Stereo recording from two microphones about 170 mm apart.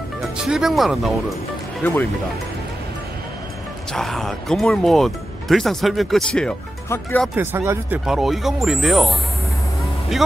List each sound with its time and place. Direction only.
0.4 s speech: 5° right (ahead or behind)
3.9 s speech: centre (ahead or behind)
7.3 s speech: 15° right (ahead or behind)
8.0 s speech: centre (ahead or behind)